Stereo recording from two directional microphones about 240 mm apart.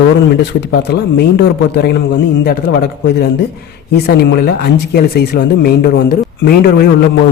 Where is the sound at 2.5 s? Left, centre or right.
Left.